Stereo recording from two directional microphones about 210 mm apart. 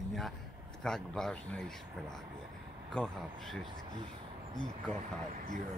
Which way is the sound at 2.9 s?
Centre (ahead or behind).